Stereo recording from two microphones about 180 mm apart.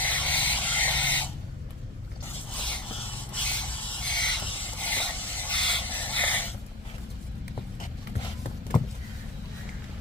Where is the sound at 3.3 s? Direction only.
5° left (ahead or behind).